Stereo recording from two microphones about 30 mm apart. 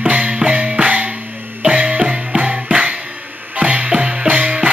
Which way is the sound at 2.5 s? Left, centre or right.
Right.